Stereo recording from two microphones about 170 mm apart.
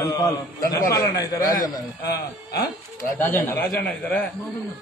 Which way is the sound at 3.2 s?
10° left (ahead or behind).